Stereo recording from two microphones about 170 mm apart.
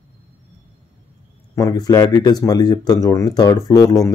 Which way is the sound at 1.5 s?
20° left (ahead or behind).